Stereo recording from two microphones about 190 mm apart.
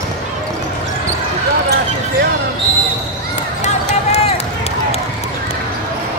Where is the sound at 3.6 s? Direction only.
35° left (ahead or behind).